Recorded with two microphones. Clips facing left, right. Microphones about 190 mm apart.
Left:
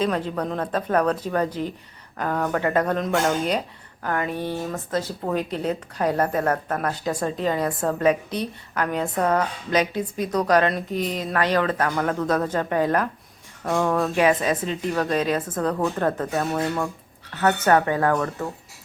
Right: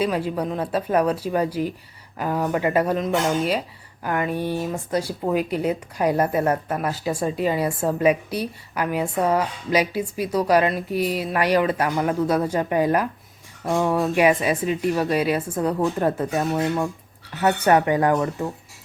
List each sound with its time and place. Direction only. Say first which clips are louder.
0.0 s speech: right 1 dB; 10° right (ahead or behind)